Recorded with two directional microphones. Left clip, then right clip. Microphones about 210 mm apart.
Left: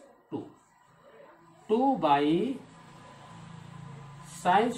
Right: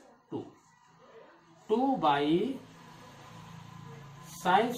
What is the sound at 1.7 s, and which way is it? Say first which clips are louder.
Speech: left 3 dB; 20° left (ahead or behind).